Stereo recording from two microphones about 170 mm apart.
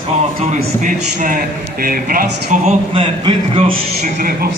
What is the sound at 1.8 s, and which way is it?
Speech, 55° right (ahead or behind).